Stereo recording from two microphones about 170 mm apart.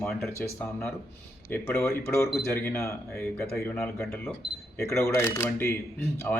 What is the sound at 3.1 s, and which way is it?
A man's voice, 5° left (ahead or behind).